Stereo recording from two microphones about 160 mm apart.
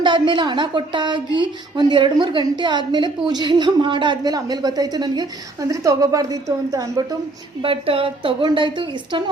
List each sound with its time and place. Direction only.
0.0 s a woman's voice: 30° right (ahead or behind)
7.6 s a woman's voice: 35° right (ahead or behind)